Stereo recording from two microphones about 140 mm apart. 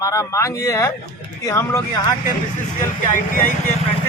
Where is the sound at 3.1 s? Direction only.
70° left (ahead or behind).